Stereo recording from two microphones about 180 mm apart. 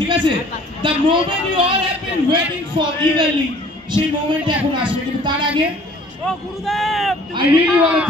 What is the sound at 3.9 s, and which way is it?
A man's voice, 25° right (ahead or behind).